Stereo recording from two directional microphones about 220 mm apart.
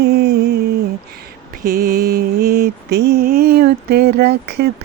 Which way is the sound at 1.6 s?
45° right (ahead or behind).